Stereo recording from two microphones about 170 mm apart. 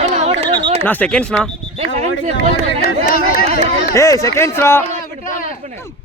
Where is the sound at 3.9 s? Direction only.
20° left (ahead or behind).